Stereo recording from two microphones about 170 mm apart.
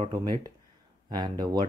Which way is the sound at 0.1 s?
25° right (ahead or behind).